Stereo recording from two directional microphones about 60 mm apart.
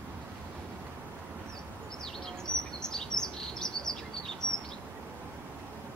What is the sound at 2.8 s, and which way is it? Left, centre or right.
Chirp, centre.